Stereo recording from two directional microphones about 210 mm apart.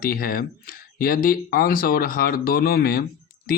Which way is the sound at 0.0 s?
45° left (ahead or behind).